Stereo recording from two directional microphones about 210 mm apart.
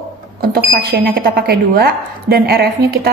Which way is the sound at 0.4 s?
45° right (ahead or behind).